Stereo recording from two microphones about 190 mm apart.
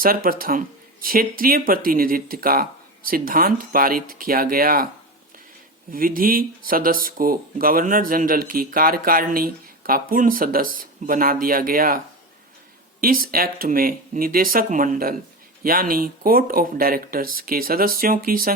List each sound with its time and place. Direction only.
0.0 s speech: 50° right (ahead or behind)
5.9 s speech: 50° right (ahead or behind)